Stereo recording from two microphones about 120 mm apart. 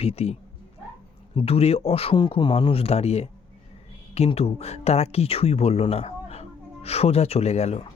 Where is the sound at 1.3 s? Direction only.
55° left (ahead or behind).